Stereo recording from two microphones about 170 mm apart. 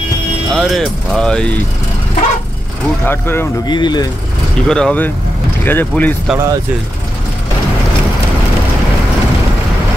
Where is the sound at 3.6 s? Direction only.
25° left (ahead or behind).